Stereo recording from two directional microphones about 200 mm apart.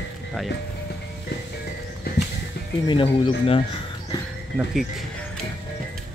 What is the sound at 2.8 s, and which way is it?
Speech, 25° left (ahead or behind).